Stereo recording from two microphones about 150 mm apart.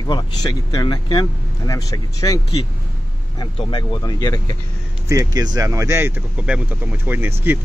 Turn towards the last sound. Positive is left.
turn(degrees=-15)  # may be behind; listen again after turning